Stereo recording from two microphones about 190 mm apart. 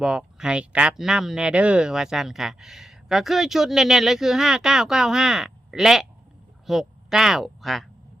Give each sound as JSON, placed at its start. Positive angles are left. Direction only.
{"t": 0.0, "sound": "speech", "side_deg": -5}